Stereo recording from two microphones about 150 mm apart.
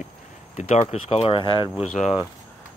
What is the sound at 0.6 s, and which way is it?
Speech, 45° left (ahead or behind).